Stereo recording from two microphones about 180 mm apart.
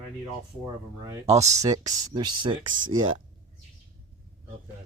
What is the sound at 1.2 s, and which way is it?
Speech, 35° right (ahead or behind).